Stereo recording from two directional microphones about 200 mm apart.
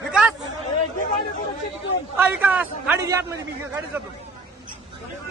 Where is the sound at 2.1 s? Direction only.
10° right (ahead or behind).